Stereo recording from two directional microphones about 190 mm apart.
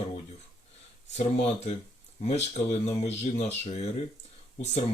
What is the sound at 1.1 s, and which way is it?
Speech, 35° left (ahead or behind).